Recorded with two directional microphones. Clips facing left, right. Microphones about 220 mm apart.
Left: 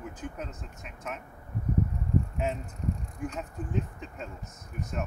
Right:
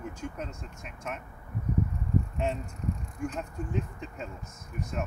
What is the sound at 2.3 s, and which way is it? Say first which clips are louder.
Speech: right 1 dB; 5° left (ahead or behind).